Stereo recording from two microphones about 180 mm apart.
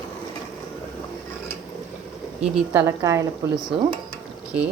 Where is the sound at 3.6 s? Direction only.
25° right (ahead or behind).